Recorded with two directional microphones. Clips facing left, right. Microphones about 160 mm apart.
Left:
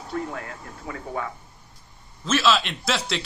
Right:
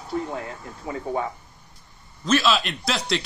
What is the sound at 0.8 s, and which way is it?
Speech, 25° right (ahead or behind).